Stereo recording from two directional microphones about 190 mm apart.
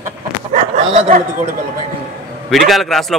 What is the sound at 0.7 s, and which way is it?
Speech, 40° right (ahead or behind).